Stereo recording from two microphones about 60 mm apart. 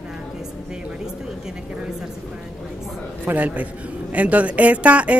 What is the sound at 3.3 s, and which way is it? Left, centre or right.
Speech, right.